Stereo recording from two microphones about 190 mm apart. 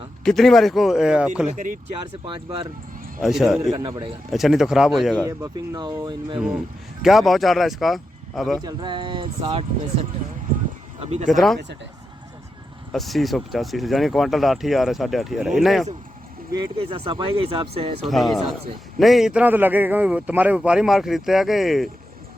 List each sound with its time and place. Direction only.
0.3 s speech: centre (ahead or behind)
1.5 s speech: 45° right (ahead or behind)
2.2 s speech: 25° right (ahead or behind)
3.2 s speech: centre (ahead or behind)
3.6 s speech: 20° right (ahead or behind)
4.3 s speech: centre (ahead or behind)
5.2 s speech: 20° right (ahead or behind)
7.0 s speech: centre (ahead or behind)
8.6 s speech: 25° right (ahead or behind)
11.3 s speech: centre (ahead or behind)
12.9 s speech: centre (ahead or behind)
16.6 s speech: 25° right (ahead or behind)
18.0 s speech: centre (ahead or behind)